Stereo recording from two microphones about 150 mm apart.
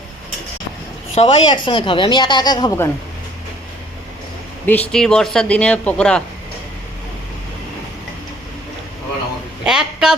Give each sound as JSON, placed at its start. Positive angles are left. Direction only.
{"t": 1.1, "sound": "a woman's voice", "side_deg": 45}
{"t": 1.5, "sound": "a woman's voice", "side_deg": 35}
{"t": 4.6, "sound": "speech", "side_deg": 10}
{"t": 9.6, "sound": "a sound", "side_deg": -5}